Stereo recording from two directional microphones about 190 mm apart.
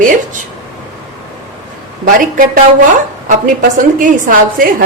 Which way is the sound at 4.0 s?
45° right (ahead or behind).